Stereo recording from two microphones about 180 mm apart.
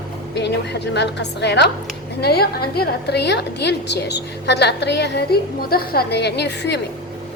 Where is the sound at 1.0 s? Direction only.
70° left (ahead or behind).